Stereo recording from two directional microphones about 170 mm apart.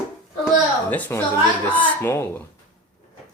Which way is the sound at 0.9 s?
10° left (ahead or behind).